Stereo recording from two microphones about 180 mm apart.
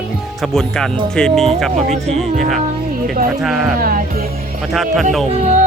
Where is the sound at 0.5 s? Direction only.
5° left (ahead or behind).